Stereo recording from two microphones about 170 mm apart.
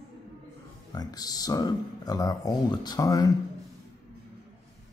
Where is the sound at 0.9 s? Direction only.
20° left (ahead or behind).